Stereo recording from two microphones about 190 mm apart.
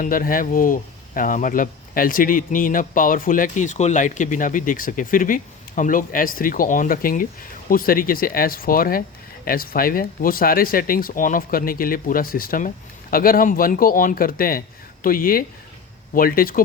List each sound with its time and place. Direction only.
0.0 s speech: 45° left (ahead or behind)